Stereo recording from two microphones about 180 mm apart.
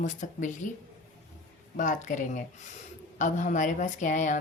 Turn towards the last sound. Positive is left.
turn(degrees=45)  # may be behind; listen again after turning